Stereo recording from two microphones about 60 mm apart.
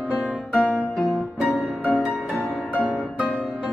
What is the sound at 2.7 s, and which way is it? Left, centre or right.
Music, left.